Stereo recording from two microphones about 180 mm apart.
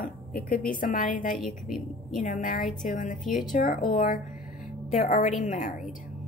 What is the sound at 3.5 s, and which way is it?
A woman's voice, 45° left (ahead or behind).